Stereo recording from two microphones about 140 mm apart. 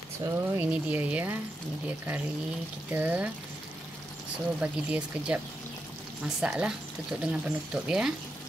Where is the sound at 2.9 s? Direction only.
10° right (ahead or behind).